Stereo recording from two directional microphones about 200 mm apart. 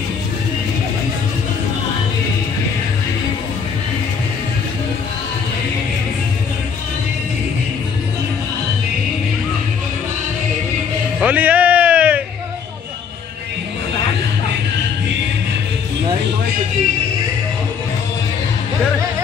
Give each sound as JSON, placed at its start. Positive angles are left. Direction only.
{"t": 11.1, "sound": "music", "side_deg": -5}